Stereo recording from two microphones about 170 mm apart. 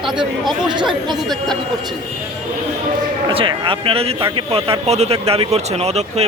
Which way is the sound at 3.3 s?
30° right (ahead or behind).